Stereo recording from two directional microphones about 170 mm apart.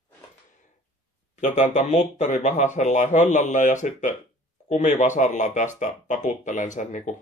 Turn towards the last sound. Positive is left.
turn(degrees=45)  # may be behind; listen again after turning